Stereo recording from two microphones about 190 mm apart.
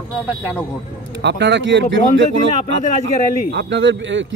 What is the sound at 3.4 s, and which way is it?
Speech, 65° right (ahead or behind).